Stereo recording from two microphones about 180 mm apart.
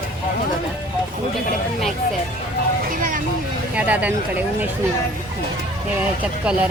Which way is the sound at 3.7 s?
10° right (ahead or behind).